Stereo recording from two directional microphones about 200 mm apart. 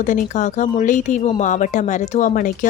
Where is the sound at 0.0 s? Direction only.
40° left (ahead or behind).